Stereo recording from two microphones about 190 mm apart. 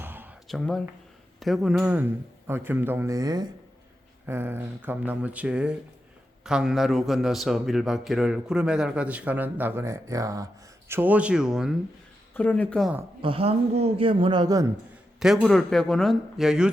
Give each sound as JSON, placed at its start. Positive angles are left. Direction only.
{"t": 0.0, "sound": "a sound", "side_deg": -10}
{"t": 0.4, "sound": "a man's voice", "side_deg": 0}
{"t": 12.3, "sound": "speech", "side_deg": 10}
{"t": 13.2, "sound": "a man's voice", "side_deg": -30}
{"t": 15.2, "sound": "a man's voice", "side_deg": 0}